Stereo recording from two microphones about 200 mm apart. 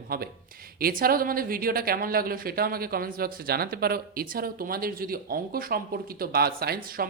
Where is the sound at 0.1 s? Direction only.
45° right (ahead or behind).